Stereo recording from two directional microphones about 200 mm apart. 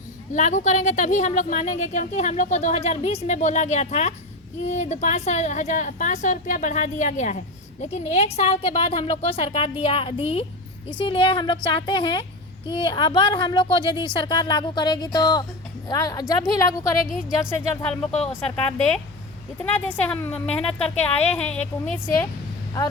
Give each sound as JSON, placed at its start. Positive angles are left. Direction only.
{"t": 0.3, "sound": "a woman's voice", "side_deg": 40}
{"t": 17.1, "sound": "speech", "side_deg": -5}
{"t": 17.5, "sound": "a woman's voice", "side_deg": 10}
{"t": 19.7, "sound": "a woman's voice", "side_deg": 10}